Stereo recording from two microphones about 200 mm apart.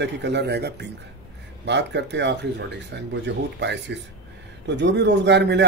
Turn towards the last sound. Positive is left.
turn(degrees=-60)  # may be behind; listen again after turning